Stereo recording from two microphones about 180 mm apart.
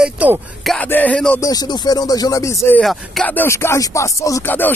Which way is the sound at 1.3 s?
20° left (ahead or behind).